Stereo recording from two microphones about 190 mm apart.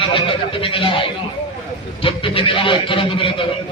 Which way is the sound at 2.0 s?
30° left (ahead or behind).